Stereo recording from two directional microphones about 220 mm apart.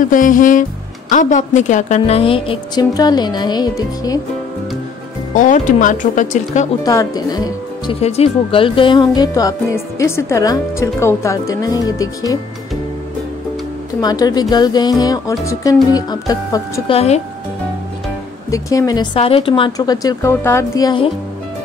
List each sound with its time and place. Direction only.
0.0 s a woman's voice: 35° left (ahead or behind); by 4.2 s 15° left (ahead or behind)
5.3 s speech: 35° left (ahead or behind)
6.8 s speech: 15° left (ahead or behind)
14.0 s a woman's voice: 20° left (ahead or behind)
18.5 s speech: 15° left (ahead or behind)
19.1 s a woman's voice: 25° left (ahead or behind)